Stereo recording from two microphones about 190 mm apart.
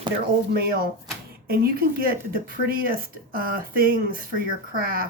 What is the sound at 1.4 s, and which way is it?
Speech, 55° right (ahead or behind).